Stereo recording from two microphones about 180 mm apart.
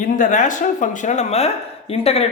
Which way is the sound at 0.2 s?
45° left (ahead or behind).